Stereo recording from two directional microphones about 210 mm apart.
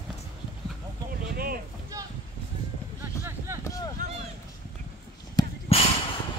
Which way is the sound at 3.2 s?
10° right (ahead or behind).